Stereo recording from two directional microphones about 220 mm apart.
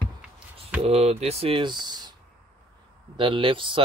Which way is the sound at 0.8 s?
30° right (ahead or behind).